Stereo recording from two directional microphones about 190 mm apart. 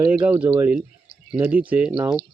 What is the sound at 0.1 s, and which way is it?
Speech, 10° right (ahead or behind).